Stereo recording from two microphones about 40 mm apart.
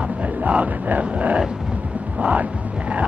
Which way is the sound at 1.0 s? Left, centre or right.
Right.